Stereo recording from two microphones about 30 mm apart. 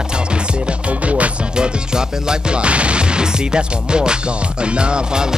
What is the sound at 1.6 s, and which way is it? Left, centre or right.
Music, right.